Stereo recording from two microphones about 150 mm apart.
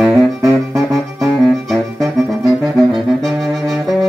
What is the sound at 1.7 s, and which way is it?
Music, centre (ahead or behind).